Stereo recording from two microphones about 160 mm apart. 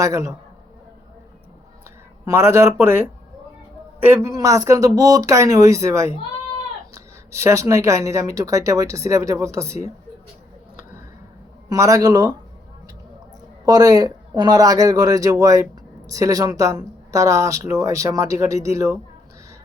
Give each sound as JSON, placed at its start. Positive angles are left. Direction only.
{"t": 0.0, "sound": "speech", "side_deg": -20}
{"t": 2.2, "sound": "speech", "side_deg": -15}
{"t": 4.0, "sound": "speech", "side_deg": -15}
{"t": 11.7, "sound": "speech", "side_deg": -20}
{"t": 13.7, "sound": "speech", "side_deg": -25}